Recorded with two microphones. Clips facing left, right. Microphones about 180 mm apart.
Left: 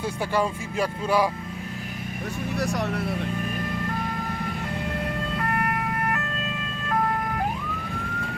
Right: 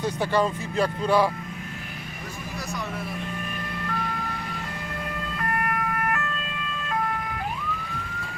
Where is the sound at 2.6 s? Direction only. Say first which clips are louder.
Left 6 dB; 70° left (ahead or behind).